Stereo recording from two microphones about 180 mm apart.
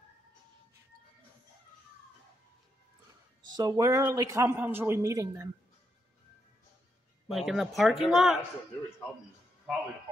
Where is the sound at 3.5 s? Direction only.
20° right (ahead or behind).